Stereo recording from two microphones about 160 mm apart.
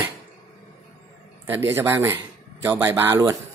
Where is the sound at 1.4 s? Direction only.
15° right (ahead or behind).